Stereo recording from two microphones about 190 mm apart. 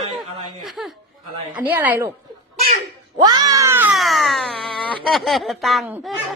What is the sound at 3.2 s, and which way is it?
Cat, 20° right (ahead or behind).